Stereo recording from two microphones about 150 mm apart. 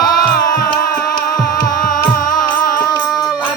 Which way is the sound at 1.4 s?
65° left (ahead or behind).